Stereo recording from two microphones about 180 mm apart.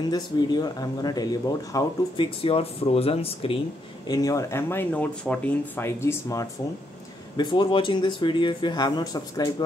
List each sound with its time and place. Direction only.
0.1 s speech: 25° left (ahead or behind)
4.1 s speech: 20° left (ahead or behind)